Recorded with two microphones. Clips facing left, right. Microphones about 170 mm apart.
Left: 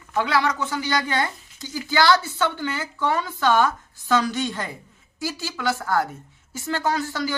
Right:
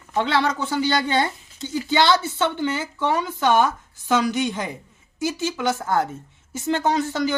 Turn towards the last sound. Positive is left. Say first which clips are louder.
# right 3 dB
turn(degrees=-20)  # may be behind; listen again after turning